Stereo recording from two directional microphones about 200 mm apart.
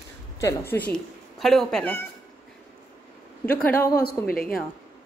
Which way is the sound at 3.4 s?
10° left (ahead or behind).